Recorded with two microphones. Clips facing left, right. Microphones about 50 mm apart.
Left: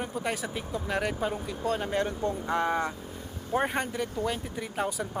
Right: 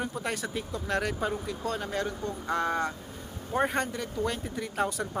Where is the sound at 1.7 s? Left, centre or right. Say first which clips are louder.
Left 4 dB; left; by 5.1 s centre.